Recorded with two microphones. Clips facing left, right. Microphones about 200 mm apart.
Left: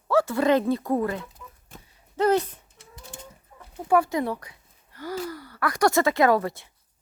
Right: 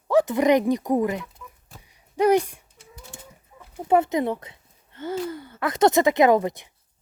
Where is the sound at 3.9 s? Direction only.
20° right (ahead or behind).